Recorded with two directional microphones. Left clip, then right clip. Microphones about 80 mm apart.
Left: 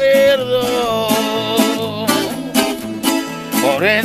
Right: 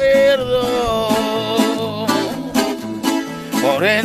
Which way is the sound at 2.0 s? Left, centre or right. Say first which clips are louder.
Left 2 dB; left.